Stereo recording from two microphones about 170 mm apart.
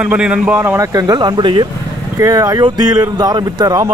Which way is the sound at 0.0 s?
5° right (ahead or behind).